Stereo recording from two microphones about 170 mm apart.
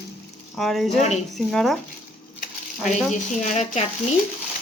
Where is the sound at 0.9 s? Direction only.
40° left (ahead or behind).